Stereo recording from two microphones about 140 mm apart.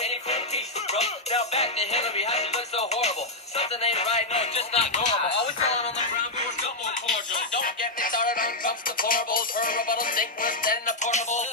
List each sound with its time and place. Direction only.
0.0 s music: 50° left (ahead or behind)
7.3 s music: 75° left (ahead or behind); by 11.4 s 55° left (ahead or behind)